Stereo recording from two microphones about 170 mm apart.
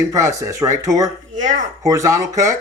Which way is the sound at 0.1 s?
20° right (ahead or behind).